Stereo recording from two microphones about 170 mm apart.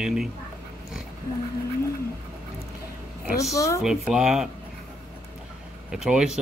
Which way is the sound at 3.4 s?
20° left (ahead or behind).